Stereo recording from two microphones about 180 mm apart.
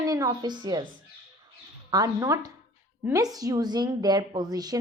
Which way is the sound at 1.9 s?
20° right (ahead or behind).